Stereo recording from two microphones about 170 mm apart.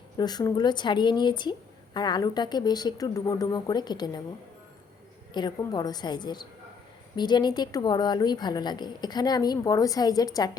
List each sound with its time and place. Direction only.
0.2 s speech: 25° left (ahead or behind)
5.3 s speech: 25° left (ahead or behind)